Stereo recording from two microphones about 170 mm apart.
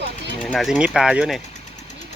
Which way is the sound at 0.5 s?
Centre (ahead or behind).